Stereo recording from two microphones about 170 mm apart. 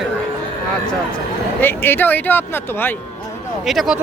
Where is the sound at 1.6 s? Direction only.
10° left (ahead or behind).